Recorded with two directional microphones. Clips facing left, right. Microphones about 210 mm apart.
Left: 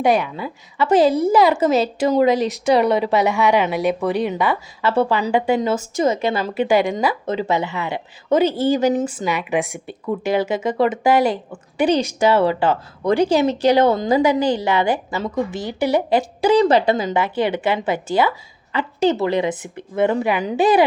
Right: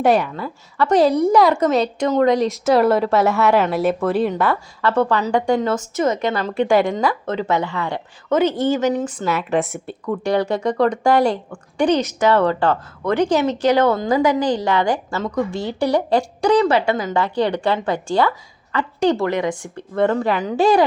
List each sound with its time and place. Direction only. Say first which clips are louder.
0.1 s a woman's voice: right 1 dB; 5° left (ahead or behind)
15.4 s a woman's voice: right 1 dB; centre (ahead or behind)
16.7 s speech: left 2 dB; 35° left (ahead or behind)
17.2 s a woman's voice: right 1 dB; 5° left (ahead or behind)
18.7 s a woman's voice: even; 25° left (ahead or behind)
20.0 s speech: even; 10° left (ahead or behind)